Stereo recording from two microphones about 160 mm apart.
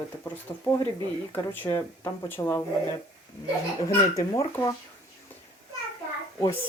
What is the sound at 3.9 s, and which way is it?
Speech, 20° left (ahead or behind).